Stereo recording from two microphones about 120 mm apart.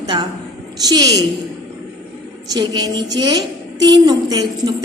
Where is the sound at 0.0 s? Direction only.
35° right (ahead or behind).